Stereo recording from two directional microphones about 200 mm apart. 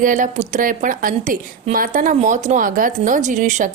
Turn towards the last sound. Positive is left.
turn(degrees=-40)  # may be behind; listen again after turning